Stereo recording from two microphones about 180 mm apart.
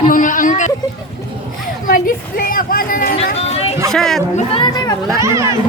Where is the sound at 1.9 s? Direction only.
50° left (ahead or behind).